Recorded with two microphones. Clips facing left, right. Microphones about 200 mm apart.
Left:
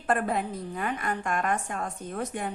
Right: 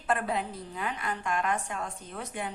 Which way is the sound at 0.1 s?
50° left (ahead or behind).